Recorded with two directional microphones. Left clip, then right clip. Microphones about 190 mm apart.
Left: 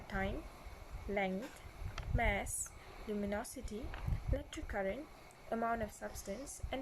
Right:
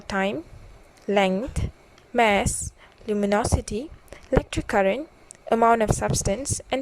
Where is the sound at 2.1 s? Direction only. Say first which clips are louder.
Right 17 dB; 55° right (ahead or behind).